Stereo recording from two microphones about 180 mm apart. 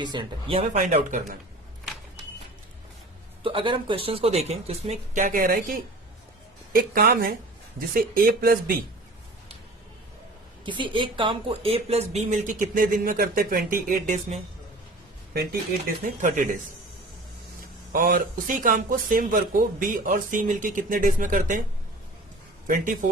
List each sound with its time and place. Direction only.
0.0 s speech: 25° right (ahead or behind)
0.7 s speech: 45° right (ahead or behind)
3.4 s speech: 30° right (ahead or behind); by 8.7 s 55° right (ahead or behind)
10.7 s speech: 25° right (ahead or behind)
16.0 s speech: 45° right (ahead or behind)
17.6 s speech: 50° right (ahead or behind)
22.6 s speech: 45° right (ahead or behind)